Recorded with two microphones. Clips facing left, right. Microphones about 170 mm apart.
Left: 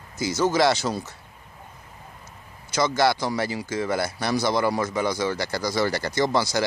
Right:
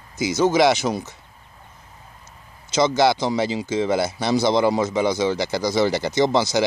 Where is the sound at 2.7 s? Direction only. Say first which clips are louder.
Right 4 dB; 20° right (ahead or behind).